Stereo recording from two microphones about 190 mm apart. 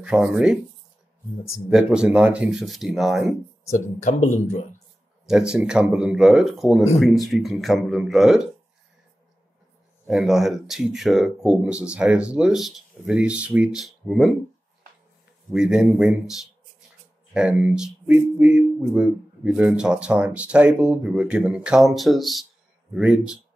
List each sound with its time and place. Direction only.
0.0 s speech: 5° right (ahead or behind)
1.7 s speech: 5° right (ahead or behind)
3.7 s speech: 40° left (ahead or behind)
5.5 s speech: 5° right (ahead or behind)
10.0 s speech: centre (ahead or behind)
15.5 s speech: 5° right (ahead or behind)